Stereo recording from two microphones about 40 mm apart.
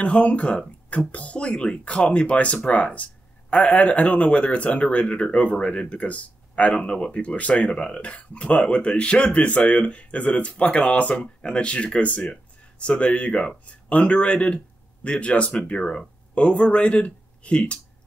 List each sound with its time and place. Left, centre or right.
0.0 s speech: left
7.2 s speech: left